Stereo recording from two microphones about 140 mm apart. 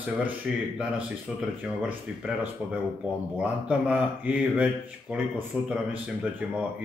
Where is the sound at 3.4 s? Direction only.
10° right (ahead or behind).